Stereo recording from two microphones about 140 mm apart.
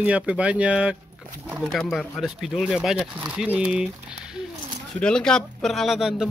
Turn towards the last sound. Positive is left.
turn(degrees=0)  # may be behind; listen again after turning